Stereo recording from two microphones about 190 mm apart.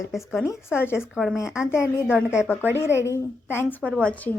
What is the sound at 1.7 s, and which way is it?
Speech, 15° left (ahead or behind).